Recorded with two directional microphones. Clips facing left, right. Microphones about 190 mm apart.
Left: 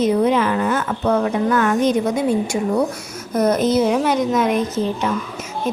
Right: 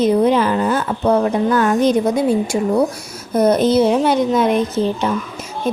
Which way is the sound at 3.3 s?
30° right (ahead or behind).